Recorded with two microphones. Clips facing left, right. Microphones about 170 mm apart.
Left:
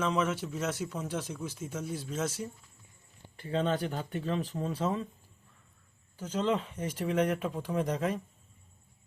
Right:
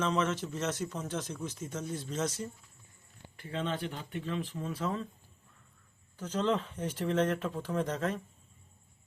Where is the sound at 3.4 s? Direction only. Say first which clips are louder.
Left 5 dB; 35° left (ahead or behind).